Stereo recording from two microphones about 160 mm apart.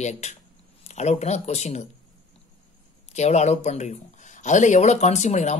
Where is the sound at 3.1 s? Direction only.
45° left (ahead or behind).